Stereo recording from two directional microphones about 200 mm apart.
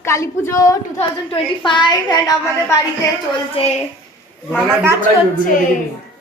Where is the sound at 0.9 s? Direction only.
25° left (ahead or behind).